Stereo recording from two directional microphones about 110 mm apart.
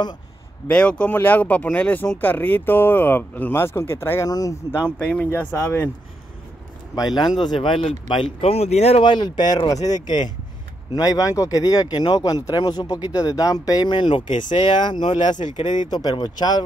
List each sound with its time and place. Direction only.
0.7 s speech: 10° left (ahead or behind)
4.3 s speech: 35° left (ahead or behind)
4.7 s speech: 15° left (ahead or behind)
7.2 s speech: 40° left (ahead or behind); by 9.0 s 75° left (ahead or behind)
9.0 s speech: 45° left (ahead or behind)